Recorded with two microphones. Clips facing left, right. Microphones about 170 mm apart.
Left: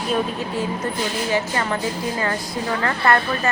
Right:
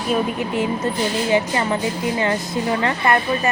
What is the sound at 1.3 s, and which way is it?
Speech, 15° right (ahead or behind).